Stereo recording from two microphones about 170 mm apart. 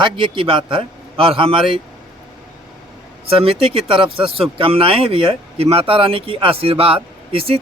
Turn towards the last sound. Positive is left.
turn(degrees=-35)  # may be behind; listen again after turning